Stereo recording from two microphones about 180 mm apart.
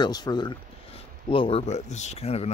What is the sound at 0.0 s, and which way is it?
Speech, 20° left (ahead or behind).